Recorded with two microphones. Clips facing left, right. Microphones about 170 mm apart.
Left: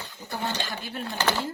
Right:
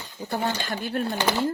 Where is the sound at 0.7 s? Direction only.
50° right (ahead or behind).